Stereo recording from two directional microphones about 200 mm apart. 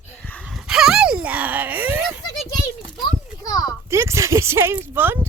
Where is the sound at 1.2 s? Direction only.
5° right (ahead or behind).